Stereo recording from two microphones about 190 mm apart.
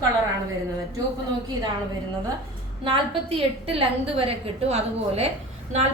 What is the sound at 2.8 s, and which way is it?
A woman's voice, 30° right (ahead or behind).